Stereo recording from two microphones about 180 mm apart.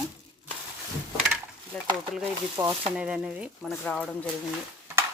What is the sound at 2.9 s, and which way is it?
Speech, 5° right (ahead or behind).